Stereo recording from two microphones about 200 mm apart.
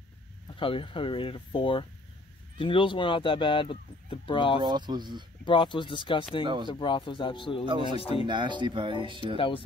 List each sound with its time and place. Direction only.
0.6 s speech: 25° left (ahead or behind)
4.6 s speech: 20° right (ahead or behind)
5.4 s speech: 25° left (ahead or behind)
6.4 s speech: 25° right (ahead or behind)
6.7 s speech: 25° left (ahead or behind)
8.3 s speech: 25° right (ahead or behind)